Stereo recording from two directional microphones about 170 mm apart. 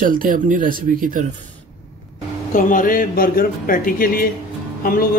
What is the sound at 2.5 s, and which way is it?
Speech, 55° left (ahead or behind).